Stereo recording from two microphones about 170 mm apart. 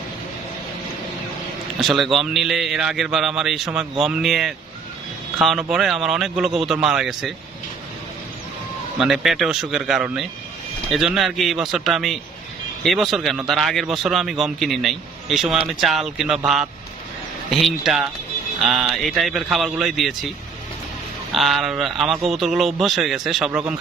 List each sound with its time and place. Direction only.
1.8 s a man's voice: centre (ahead or behind)
9.0 s a man's voice: centre (ahead or behind)
21.3 s a man's voice: centre (ahead or behind)